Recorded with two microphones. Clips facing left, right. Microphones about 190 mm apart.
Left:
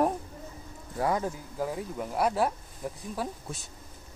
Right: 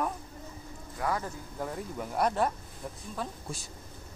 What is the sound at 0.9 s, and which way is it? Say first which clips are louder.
Speech: left 4 dB; 20° left (ahead or behind).